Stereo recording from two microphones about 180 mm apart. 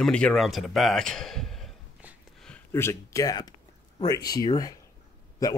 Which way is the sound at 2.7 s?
15° left (ahead or behind).